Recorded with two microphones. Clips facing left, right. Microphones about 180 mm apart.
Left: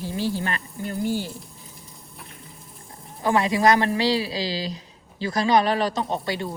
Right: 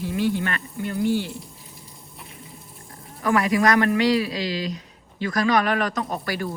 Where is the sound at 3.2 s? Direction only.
25° left (ahead or behind).